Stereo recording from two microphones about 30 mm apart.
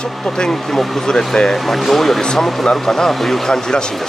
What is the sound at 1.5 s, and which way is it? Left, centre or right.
Speech, centre.